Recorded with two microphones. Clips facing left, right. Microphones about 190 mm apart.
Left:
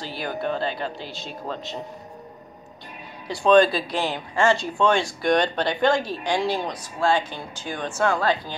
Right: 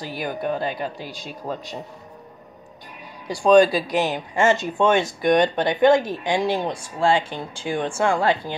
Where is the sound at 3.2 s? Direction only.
15° right (ahead or behind).